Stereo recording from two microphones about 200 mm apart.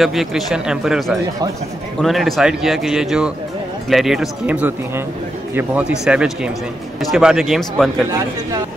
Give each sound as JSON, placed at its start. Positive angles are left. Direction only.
{"t": 0.0, "sound": "a man's voice", "side_deg": 0}